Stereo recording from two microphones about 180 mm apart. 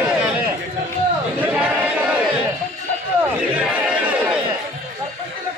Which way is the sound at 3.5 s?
5° right (ahead or behind).